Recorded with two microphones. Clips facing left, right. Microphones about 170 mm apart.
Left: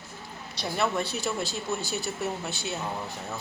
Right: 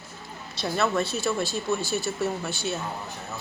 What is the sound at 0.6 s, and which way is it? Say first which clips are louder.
Speech: right 3 dB; 15° left (ahead or behind).